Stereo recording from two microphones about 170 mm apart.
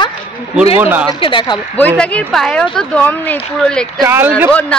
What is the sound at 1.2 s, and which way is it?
Speech, 30° left (ahead or behind).